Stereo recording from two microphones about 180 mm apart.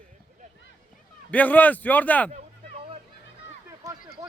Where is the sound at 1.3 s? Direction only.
10° left (ahead or behind).